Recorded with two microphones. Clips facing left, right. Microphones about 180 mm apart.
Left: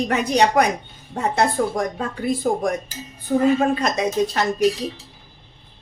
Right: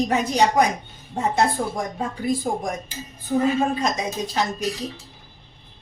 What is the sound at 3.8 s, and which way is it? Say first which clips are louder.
Speech: left 5 dB; 65° left (ahead or behind).